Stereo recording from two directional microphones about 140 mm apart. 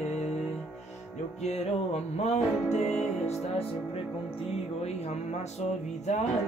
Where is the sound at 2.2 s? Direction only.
55° left (ahead or behind).